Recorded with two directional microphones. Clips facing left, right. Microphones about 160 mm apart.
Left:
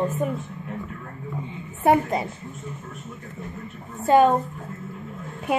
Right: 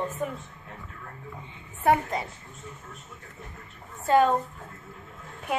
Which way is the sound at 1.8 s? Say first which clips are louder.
Left 4 dB; 20° left (ahead or behind).